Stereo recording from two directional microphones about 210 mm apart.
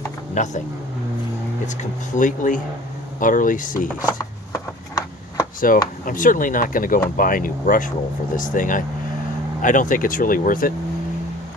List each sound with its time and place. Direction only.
0.4 s speech: 35° left (ahead or behind)
1.8 s speech: 35° left (ahead or behind)
4.2 s a sound: 15° left (ahead or behind)
5.7 s speech: 40° left (ahead or behind)